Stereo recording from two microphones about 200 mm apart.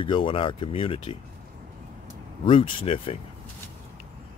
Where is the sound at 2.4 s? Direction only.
25° left (ahead or behind).